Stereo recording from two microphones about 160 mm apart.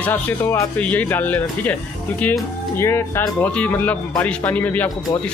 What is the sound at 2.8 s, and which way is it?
Speech, 15° left (ahead or behind).